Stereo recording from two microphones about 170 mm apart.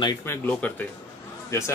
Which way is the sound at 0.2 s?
10° left (ahead or behind).